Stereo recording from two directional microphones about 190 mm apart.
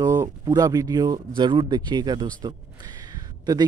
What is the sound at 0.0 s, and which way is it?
Speech, 20° right (ahead or behind).